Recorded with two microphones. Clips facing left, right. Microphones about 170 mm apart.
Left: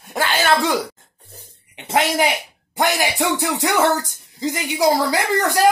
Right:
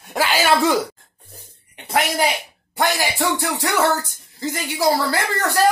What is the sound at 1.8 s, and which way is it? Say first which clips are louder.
Speech: left 2 dB; 20° left (ahead or behind).